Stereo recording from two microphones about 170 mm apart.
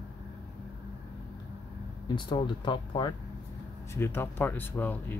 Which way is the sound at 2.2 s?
30° left (ahead or behind).